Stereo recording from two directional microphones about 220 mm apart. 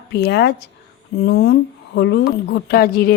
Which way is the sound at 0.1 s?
50° left (ahead or behind).